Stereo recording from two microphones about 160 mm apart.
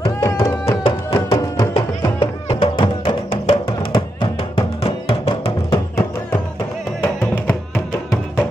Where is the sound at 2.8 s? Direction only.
30° left (ahead or behind).